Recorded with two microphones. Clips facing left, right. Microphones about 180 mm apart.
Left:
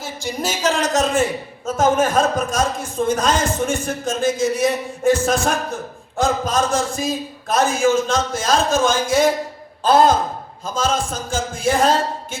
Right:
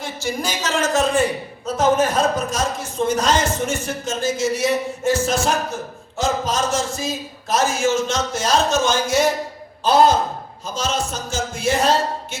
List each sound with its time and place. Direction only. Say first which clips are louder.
0.0 s a sound: right 2 dB; 15° left (ahead or behind)
0.4 s a man's voice: left 4 dB; 35° left (ahead or behind)
1.6 s a man's voice: even; 50° left (ahead or behind)